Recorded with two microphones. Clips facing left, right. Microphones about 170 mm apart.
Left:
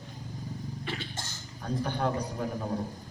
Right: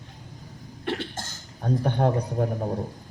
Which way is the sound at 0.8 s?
65° right (ahead or behind).